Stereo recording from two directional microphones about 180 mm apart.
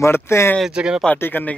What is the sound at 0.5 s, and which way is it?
Speech, 5° right (ahead or behind).